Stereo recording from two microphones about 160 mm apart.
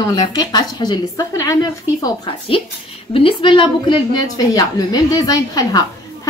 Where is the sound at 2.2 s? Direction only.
35° left (ahead or behind).